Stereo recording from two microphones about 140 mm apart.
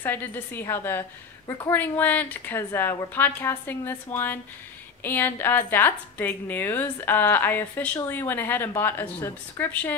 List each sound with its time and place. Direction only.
0.0 s a woman's voice: 15° left (ahead or behind)